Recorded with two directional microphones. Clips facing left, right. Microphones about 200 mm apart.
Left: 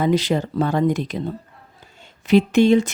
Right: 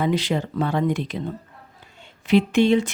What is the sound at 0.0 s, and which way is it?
Speech, 40° left (ahead or behind).